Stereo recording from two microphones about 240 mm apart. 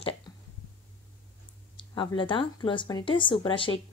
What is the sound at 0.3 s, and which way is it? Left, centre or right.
Hiccup, centre.